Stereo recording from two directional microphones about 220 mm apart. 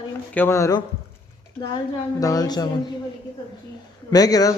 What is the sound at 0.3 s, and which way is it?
Speech, 10° left (ahead or behind).